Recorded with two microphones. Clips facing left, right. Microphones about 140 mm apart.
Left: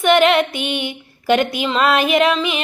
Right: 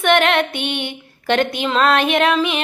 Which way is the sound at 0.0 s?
Centre (ahead or behind).